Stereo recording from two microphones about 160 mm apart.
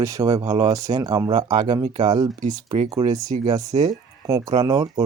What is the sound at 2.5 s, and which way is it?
Speech, 35° right (ahead or behind).